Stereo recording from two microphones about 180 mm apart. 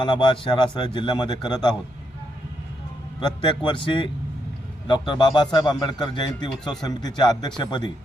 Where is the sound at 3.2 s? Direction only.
25° left (ahead or behind).